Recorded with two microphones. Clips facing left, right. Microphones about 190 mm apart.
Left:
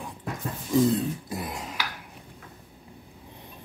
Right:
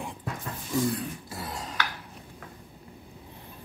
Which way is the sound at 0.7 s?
20° left (ahead or behind).